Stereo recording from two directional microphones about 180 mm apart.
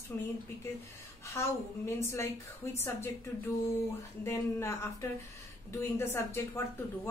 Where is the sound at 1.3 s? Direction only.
15° left (ahead or behind).